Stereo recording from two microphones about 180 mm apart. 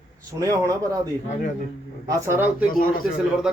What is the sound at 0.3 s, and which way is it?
Speech, 20° right (ahead or behind).